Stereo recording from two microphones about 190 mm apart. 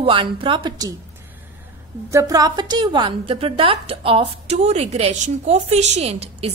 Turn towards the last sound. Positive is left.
turn(degrees=-30)  # may be behind; listen again after turning